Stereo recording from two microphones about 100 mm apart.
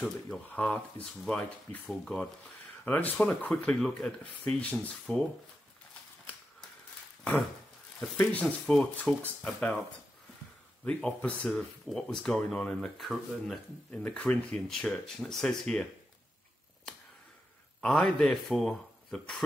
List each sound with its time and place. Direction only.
0.6 s speech: 15° left (ahead or behind)
8.2 s speech: 15° left (ahead or behind)
10.9 s speech: 10° left (ahead or behind)
13.8 s speech: 15° left (ahead or behind)
17.7 s speech: 5° left (ahead or behind)